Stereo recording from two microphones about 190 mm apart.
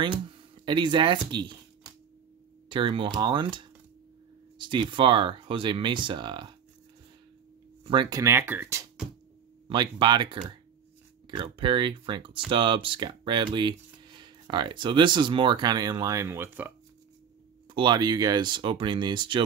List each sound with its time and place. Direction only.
0.7 s speech: 25° right (ahead or behind)
2.7 s speech: 25° right (ahead or behind)
7.8 s speech: 25° right (ahead or behind)
9.7 s speech: 25° right (ahead or behind)
17.7 s speech: 25° right (ahead or behind)